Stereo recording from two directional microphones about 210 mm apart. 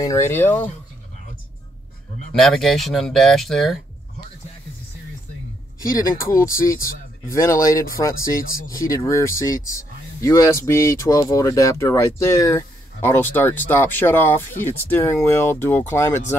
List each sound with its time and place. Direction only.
0.0 s speech: 15° left (ahead or behind)
2.4 s speech: centre (ahead or behind)
6.4 s speech: 15° left (ahead or behind)
8.3 s speech: 40° left (ahead or behind)
8.8 s speech: 15° left (ahead or behind)